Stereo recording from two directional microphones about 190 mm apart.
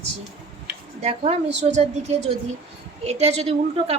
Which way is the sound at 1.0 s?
35° right (ahead or behind).